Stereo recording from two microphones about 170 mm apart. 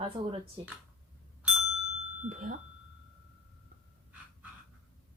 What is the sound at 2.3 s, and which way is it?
Speech, 50° right (ahead or behind).